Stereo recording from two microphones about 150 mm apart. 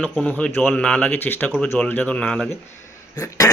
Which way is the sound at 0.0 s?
5° left (ahead or behind).